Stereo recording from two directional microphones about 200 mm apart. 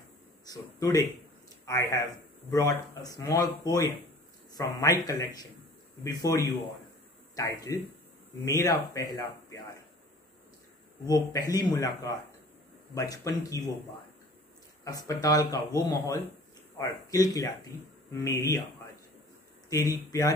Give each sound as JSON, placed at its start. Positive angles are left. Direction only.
{"t": 0.5, "sound": "a man's voice", "side_deg": 20}
{"t": 11.3, "sound": "speech", "side_deg": 20}
{"t": 14.9, "sound": "speech", "side_deg": 20}
{"t": 19.7, "sound": "speech", "side_deg": 15}